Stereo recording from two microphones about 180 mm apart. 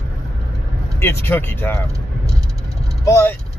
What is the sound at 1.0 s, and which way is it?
Speech, 10° left (ahead or behind).